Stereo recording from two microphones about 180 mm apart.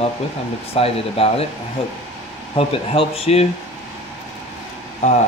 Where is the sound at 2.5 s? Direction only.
30° left (ahead or behind).